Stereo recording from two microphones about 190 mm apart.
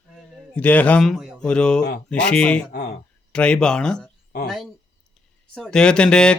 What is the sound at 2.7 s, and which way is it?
Speech, 50° left (ahead or behind).